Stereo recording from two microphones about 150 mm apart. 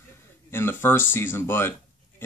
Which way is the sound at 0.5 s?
15° left (ahead or behind).